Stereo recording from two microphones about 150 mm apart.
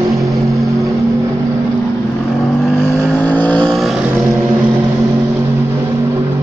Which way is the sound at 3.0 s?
10° left (ahead or behind).